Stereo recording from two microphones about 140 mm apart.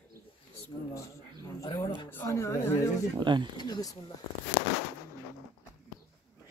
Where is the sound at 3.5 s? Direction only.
30° left (ahead or behind).